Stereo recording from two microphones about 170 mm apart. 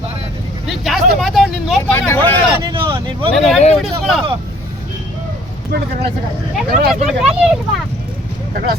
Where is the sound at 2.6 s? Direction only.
30° right (ahead or behind).